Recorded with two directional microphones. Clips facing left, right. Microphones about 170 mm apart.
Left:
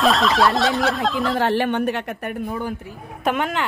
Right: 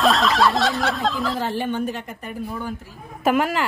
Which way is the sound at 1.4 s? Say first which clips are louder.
Left 4 dB; 70° left (ahead or behind).